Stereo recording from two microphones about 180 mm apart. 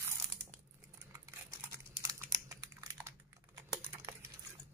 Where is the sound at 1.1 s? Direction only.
15° right (ahead or behind).